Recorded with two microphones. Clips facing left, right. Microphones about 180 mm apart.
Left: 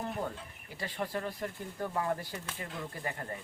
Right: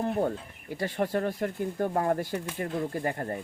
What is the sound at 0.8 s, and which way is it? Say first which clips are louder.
Speech: right 8 dB; 45° right (ahead or behind).